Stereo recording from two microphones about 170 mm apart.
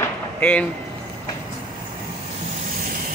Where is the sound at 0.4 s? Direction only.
5° left (ahead or behind).